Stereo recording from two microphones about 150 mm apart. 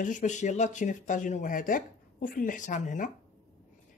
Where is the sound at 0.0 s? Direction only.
60° left (ahead or behind).